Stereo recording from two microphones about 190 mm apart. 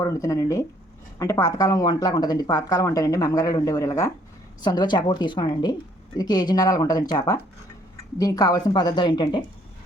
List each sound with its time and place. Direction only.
0.0 s speech: 15° left (ahead or behind)